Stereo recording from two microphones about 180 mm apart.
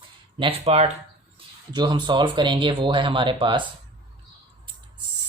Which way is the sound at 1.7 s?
25° right (ahead or behind).